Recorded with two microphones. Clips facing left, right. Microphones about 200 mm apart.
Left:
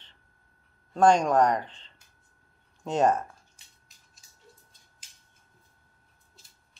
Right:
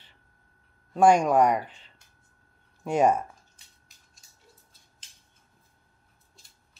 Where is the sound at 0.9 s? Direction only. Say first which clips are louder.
Right 1 dB; 10° right (ahead or behind).